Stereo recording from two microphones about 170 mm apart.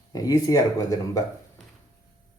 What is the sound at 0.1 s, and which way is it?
Speech, 20° left (ahead or behind).